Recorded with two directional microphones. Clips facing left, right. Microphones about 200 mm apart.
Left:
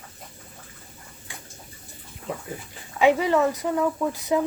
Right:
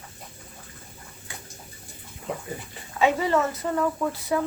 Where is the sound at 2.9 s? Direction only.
15° left (ahead or behind).